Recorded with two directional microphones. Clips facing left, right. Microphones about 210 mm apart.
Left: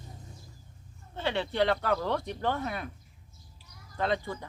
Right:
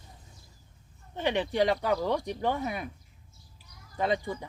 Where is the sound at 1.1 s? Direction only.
15° right (ahead or behind).